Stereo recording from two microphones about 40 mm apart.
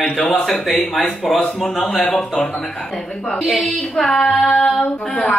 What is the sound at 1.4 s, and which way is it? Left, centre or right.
A woman's voice, centre.